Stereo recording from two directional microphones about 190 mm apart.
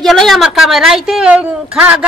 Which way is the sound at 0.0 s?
Centre (ahead or behind).